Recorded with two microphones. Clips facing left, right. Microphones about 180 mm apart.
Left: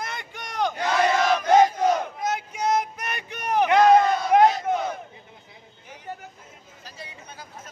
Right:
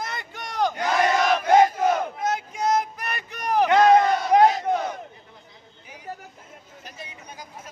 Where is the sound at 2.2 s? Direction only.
Centre (ahead or behind).